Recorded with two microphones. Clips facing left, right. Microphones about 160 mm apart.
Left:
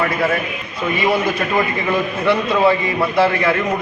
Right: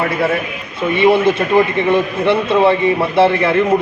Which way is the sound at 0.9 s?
25° right (ahead or behind).